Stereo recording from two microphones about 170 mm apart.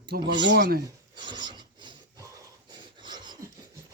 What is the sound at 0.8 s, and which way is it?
Filing, 25° right (ahead or behind).